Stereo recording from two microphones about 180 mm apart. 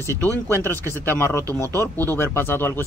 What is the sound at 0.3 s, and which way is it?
A man's voice, 15° right (ahead or behind).